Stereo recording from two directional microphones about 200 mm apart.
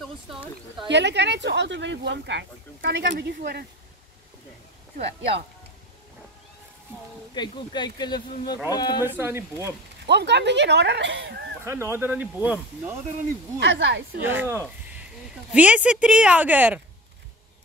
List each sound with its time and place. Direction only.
0.0 s speech: centre (ahead or behind)
0.8 s speech: 60° right (ahead or behind)
3.3 s speech: 50° right (ahead or behind)
7.3 s speech: 20° left (ahead or behind)
9.0 s speech: 10° right (ahead or behind)
10.0 s speech: 55° right (ahead or behind)
11.6 s speech: 10° right (ahead or behind)
13.6 s speech: 65° right (ahead or behind)
14.2 s speech: 10° right (ahead or behind)